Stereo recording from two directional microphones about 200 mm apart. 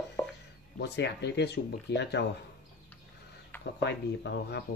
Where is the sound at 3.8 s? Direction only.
60° left (ahead or behind).